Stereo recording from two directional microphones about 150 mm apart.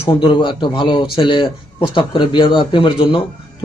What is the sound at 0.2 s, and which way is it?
A man's voice, 30° left (ahead or behind).